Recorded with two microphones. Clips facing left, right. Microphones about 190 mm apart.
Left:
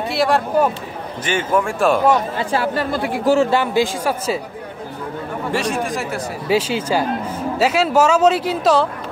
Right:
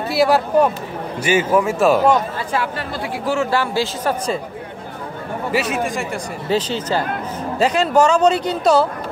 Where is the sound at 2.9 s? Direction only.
50° left (ahead or behind).